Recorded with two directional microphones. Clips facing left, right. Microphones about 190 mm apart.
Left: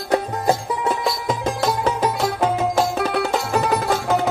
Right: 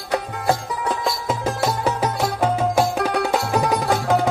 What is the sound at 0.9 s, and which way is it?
Music, centre (ahead or behind).